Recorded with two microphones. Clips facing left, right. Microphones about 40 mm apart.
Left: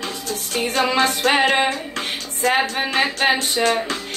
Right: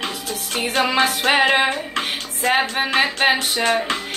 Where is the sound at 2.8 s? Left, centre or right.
Centre.